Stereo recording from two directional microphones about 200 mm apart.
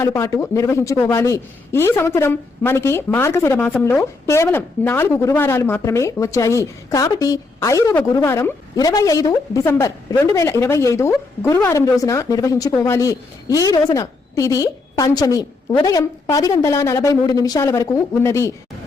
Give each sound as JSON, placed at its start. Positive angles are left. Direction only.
{"t": 0.0, "sound": "a woman's voice", "side_deg": 15}